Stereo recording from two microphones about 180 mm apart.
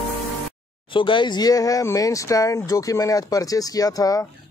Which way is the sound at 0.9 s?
25° left (ahead or behind).